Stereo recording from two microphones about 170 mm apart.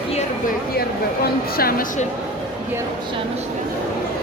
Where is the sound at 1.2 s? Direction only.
60° left (ahead or behind).